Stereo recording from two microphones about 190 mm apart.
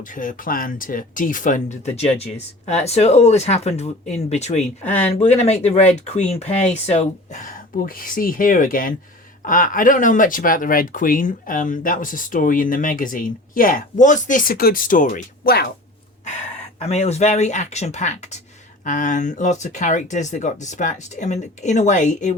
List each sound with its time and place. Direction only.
0.0 s speech: 45° left (ahead or behind)
16.8 s speech: 35° left (ahead or behind)